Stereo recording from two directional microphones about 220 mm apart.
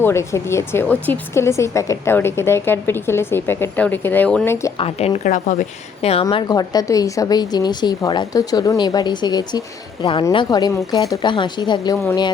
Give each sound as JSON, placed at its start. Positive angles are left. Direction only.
{"t": 0.0, "sound": "speech", "side_deg": 10}
{"t": 4.8, "sound": "a woman's voice", "side_deg": 30}
{"t": 6.2, "sound": "a woman's voice", "side_deg": 15}